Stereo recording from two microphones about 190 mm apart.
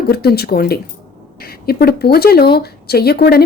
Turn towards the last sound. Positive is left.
turn(degrees=55)  # may be behind; listen again after turning